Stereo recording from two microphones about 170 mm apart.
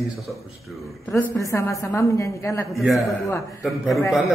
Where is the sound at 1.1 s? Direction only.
15° left (ahead or behind).